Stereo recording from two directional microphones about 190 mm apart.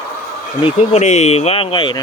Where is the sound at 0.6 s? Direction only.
30° left (ahead or behind).